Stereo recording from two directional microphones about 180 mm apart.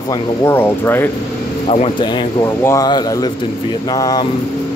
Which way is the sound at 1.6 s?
35° left (ahead or behind).